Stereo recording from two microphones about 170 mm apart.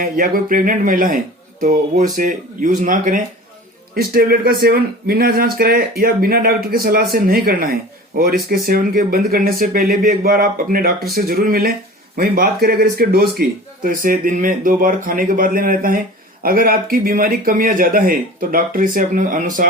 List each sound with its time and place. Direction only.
0.0 s speech: 55° right (ahead or behind)
3.9 s speech: 65° right (ahead or behind)